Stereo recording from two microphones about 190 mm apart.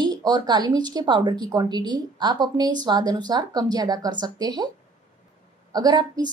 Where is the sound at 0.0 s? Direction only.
20° right (ahead or behind).